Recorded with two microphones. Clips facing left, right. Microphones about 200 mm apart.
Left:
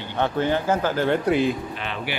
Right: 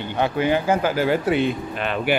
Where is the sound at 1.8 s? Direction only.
50° right (ahead or behind).